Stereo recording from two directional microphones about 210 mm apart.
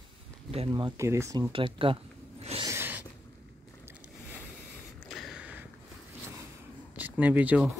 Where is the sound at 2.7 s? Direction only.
10° right (ahead or behind).